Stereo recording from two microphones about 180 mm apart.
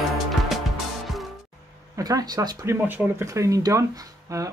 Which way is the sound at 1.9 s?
20° right (ahead or behind).